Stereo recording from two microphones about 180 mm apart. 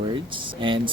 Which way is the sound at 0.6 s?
30° right (ahead or behind).